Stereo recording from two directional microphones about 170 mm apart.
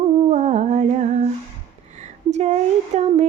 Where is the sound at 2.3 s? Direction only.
40° right (ahead or behind).